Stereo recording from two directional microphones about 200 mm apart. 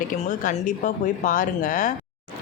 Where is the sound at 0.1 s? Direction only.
40° left (ahead or behind).